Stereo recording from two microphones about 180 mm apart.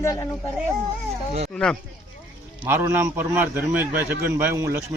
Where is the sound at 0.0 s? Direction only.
20° left (ahead or behind).